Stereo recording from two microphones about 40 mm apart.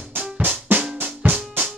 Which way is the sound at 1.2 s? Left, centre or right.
Right.